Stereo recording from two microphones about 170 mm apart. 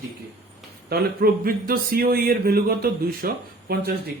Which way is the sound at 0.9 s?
60° right (ahead or behind).